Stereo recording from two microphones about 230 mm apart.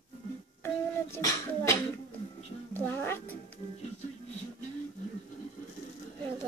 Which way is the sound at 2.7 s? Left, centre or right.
Centre.